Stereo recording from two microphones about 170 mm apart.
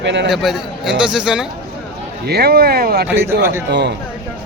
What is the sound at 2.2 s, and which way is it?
Speech, 70° right (ahead or behind).